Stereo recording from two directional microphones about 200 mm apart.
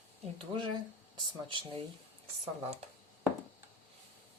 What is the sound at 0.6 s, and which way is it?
Speech, 20° right (ahead or behind).